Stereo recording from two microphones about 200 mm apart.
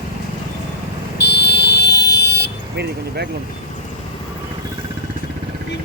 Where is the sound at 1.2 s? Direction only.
55° left (ahead or behind).